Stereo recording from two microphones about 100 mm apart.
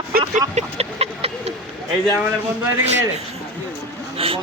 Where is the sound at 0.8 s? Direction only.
90° right.